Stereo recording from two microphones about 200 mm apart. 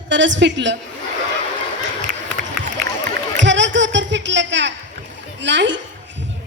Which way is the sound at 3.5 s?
65° right (ahead or behind).